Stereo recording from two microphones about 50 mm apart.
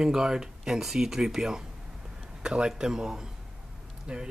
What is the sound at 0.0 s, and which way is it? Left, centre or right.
Speech, centre.